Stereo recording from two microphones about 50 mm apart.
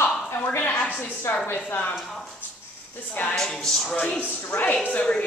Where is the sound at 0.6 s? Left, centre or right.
Left.